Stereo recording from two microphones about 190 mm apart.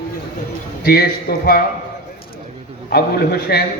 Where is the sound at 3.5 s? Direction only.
55° left (ahead or behind).